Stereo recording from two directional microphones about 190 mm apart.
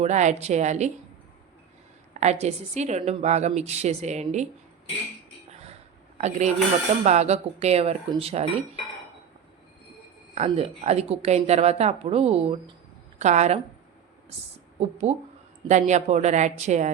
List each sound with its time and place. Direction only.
0.0 s a woman's voice: 40° right (ahead or behind)
2.2 s a woman's voice: 35° right (ahead or behind)
6.1 s a woman's voice: 35° right (ahead or behind)
10.3 s a woman's voice: 35° right (ahead or behind)
14.8 s a woman's voice: 35° right (ahead or behind)